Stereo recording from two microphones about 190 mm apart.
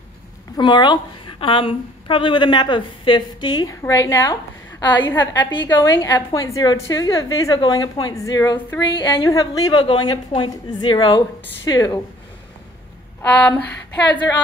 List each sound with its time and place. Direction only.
0.6 s a woman's voice: 25° left (ahead or behind)
13.2 s speech: 5° left (ahead or behind)